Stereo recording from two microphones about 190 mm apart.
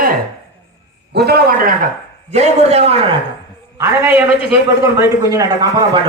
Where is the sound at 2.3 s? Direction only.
35° right (ahead or behind).